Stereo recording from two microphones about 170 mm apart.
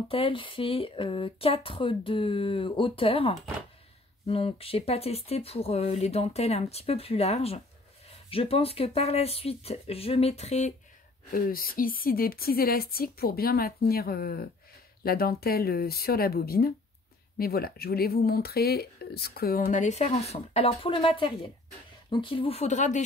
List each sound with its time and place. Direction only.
0.1 s speech: 30° left (ahead or behind)
11.3 s speech: 60° left (ahead or behind)